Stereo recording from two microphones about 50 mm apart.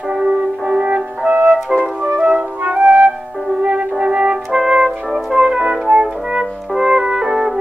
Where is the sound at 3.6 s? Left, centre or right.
Right.